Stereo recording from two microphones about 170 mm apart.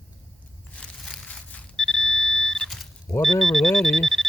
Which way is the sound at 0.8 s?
5° left (ahead or behind).